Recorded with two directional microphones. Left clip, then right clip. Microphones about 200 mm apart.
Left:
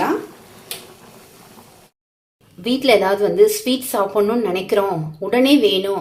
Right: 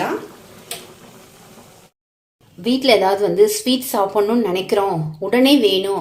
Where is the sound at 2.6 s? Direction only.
Centre (ahead or behind).